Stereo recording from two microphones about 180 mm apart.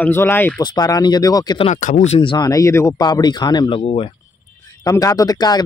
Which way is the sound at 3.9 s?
35° left (ahead or behind).